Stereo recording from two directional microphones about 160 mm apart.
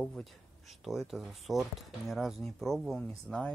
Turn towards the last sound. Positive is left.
turn(degrees=5)  # may be behind; listen again after turning